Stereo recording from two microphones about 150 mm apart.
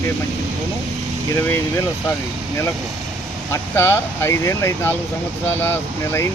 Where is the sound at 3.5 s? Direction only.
15° left (ahead or behind).